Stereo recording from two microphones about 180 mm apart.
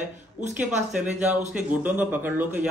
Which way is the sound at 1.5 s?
10° right (ahead or behind).